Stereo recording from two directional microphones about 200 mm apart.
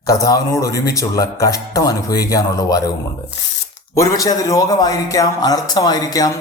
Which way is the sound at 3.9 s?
20° left (ahead or behind).